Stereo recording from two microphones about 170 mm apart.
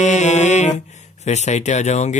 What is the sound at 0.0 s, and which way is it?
Music, 45° left (ahead or behind).